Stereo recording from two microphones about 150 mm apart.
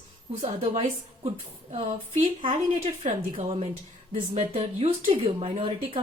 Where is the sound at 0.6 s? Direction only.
50° right (ahead or behind).